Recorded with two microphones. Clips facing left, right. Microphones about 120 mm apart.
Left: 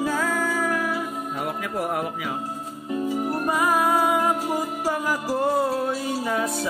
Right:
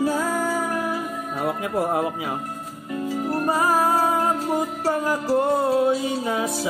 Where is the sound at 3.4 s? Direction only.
35° right (ahead or behind).